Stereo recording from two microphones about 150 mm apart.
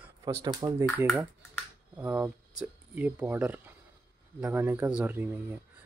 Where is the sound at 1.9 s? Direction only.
10° right (ahead or behind).